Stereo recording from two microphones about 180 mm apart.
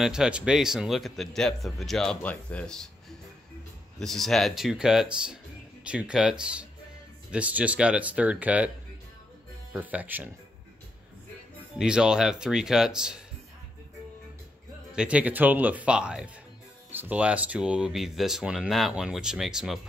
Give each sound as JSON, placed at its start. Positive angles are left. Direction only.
{"t": 0.0, "sound": "speech", "side_deg": -5}
{"t": 4.0, "sound": "speech", "side_deg": 0}
{"t": 11.8, "sound": "speech", "side_deg": -5}
{"t": 15.0, "sound": "speech", "side_deg": -5}